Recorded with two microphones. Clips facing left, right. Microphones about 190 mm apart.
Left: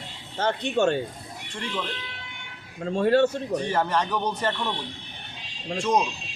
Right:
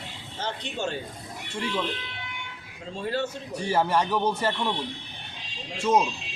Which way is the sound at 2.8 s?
60° left (ahead or behind).